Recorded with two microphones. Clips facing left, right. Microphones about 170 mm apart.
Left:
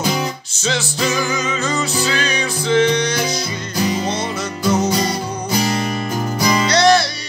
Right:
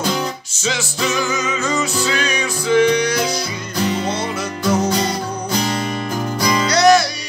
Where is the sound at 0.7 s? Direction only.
35° left (ahead or behind).